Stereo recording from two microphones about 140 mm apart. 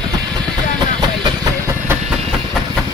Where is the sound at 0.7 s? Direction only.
30° right (ahead or behind).